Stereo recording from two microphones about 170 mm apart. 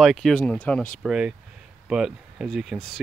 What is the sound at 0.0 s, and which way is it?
Speech, centre (ahead or behind).